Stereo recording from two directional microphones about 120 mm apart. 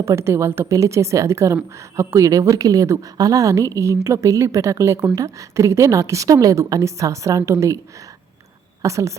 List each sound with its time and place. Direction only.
0.0 s a woman's voice: 25° right (ahead or behind)
8.8 s a woman's voice: 25° right (ahead or behind)